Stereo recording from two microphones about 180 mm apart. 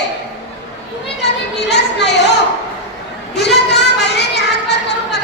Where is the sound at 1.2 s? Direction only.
70° left (ahead or behind).